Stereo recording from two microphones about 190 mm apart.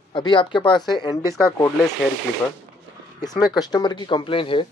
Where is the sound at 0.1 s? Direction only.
25° left (ahead or behind).